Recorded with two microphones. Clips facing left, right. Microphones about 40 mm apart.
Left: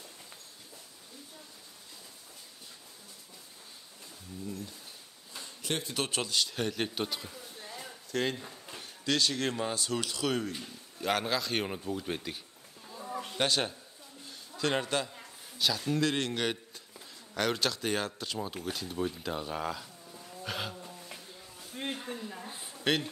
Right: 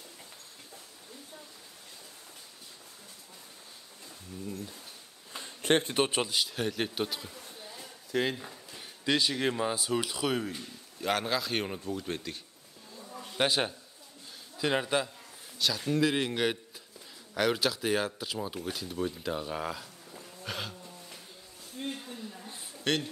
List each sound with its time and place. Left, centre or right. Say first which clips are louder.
5.3 s a sound: right 8 dB; right
5.9 s speech: right 3 dB; centre
6.5 s speech: right 1 dB; centre
8.1 s speech: right 2 dB; centre
13.0 s livestock: left 7 dB; left
13.4 s speech: right 2 dB; centre
20.2 s insect: left 1 dB; centre
21.7 s a sound: left 1 dB; left
22.5 s a sound: even; centre